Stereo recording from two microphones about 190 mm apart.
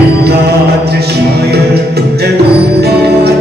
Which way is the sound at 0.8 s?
60° right (ahead or behind).